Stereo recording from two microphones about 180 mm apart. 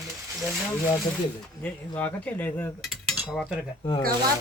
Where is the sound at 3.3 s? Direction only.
5° right (ahead or behind).